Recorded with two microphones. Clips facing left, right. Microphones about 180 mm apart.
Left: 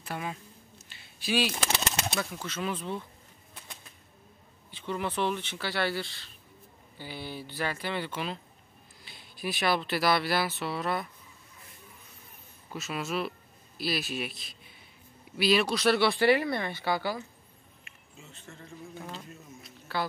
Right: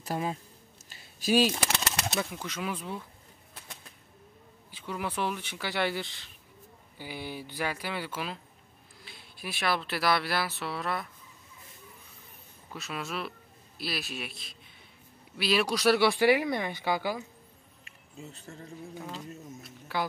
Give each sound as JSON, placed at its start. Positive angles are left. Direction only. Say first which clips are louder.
{"t": 0.0, "sound": "speech", "louder": "right 4 dB", "side_deg": -35}
{"t": 0.8, "sound": "a sound", "louder": "right 5 dB", "side_deg": -40}
{"t": 2.1, "sound": "speech", "louder": "even", "side_deg": -15}
{"t": 4.6, "sound": "speech", "louder": "left 2 dB", "side_deg": -10}
{"t": 12.7, "sound": "speech", "louder": "left 4 dB", "side_deg": 0}
{"t": 17.8, "sound": "a sound", "louder": "right 7 dB", "side_deg": -35}
{"t": 18.9, "sound": "speech", "louder": "right 2 dB", "side_deg": -5}
{"t": 19.9, "sound": "speech", "louder": "even", "side_deg": -15}